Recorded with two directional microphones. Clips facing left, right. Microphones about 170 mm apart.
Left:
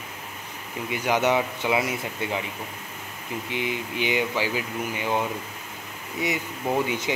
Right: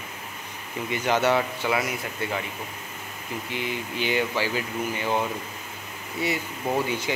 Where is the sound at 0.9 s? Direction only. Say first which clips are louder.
Even; 10° left (ahead or behind).